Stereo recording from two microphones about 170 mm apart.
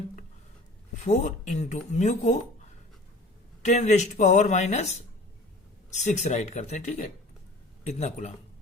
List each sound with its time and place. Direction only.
0.9 s a man's voice: 40° left (ahead or behind)